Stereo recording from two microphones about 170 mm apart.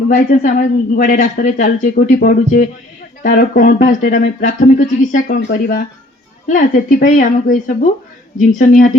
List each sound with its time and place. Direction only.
0.1 s a woman's voice: 50° left (ahead or behind)